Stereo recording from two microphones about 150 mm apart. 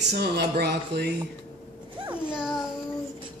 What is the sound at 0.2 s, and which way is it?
Speech, 90° right.